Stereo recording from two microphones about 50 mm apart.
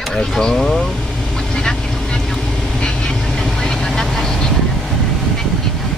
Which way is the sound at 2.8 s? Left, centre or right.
Centre.